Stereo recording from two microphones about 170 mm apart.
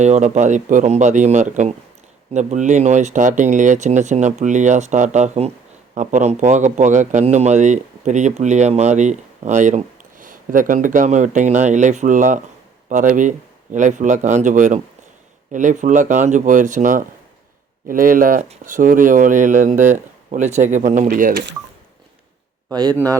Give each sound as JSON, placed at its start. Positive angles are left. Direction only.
{"t": 0.0, "sound": "speech", "side_deg": -45}
{"t": 22.7, "sound": "speech", "side_deg": -25}